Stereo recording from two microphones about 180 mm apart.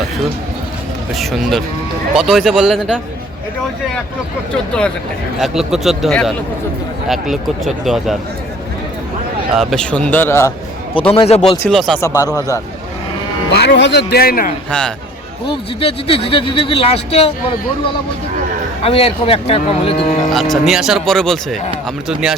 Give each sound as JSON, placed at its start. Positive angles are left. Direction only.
{"t": 1.1, "sound": "speech", "side_deg": 0}
{"t": 5.4, "sound": "speech", "side_deg": 0}
{"t": 9.6, "sound": "a man's voice", "side_deg": 0}
{"t": 11.1, "sound": "speech", "side_deg": 35}
{"t": 11.7, "sound": "speech", "side_deg": 0}
{"t": 11.9, "sound": "a man's voice", "side_deg": 15}
{"t": 13.5, "sound": "speech", "side_deg": 65}
{"t": 14.7, "sound": "speech", "side_deg": 5}
{"t": 15.4, "sound": "speech", "side_deg": 30}
{"t": 18.8, "sound": "speech", "side_deg": 35}
{"t": 20.3, "sound": "speech", "side_deg": 0}